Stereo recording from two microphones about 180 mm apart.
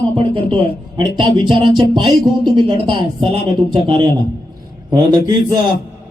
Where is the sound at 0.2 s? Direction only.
30° right (ahead or behind).